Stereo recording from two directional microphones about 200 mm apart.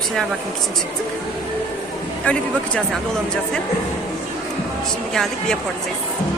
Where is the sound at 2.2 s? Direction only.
5° left (ahead or behind).